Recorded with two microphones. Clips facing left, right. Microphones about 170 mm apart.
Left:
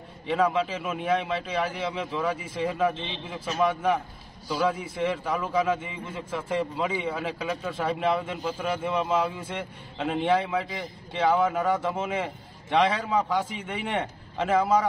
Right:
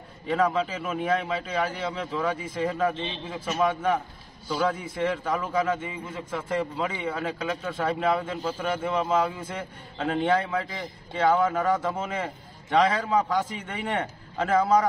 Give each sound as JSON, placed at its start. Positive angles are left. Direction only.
{"t": 0.5, "sound": "a man's voice", "side_deg": 10}